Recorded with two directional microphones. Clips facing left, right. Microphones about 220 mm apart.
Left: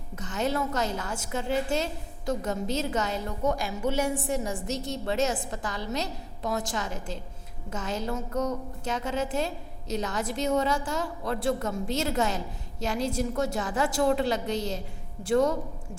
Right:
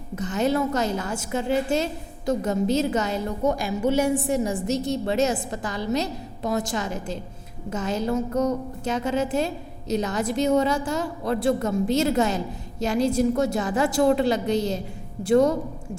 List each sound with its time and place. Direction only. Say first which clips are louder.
0.2 s a woman's voice: right 6 dB; 10° right (ahead or behind)
8.1 s a sound: right 7 dB; 35° right (ahead or behind)
8.8 s a woman's voice: right 5 dB; 10° right (ahead or behind)